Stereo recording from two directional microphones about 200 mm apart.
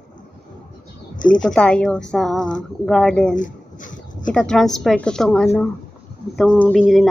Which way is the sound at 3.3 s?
40° left (ahead or behind).